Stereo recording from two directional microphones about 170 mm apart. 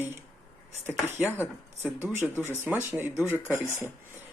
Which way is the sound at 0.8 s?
15° right (ahead or behind).